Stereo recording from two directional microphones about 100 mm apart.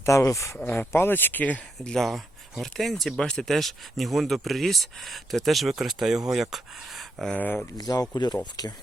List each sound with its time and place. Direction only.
0.0 s speech: 30° left (ahead or behind); by 7.3 s centre (ahead or behind)
7.3 s speech: 15° left (ahead or behind)
7.8 s speech: 40° left (ahead or behind)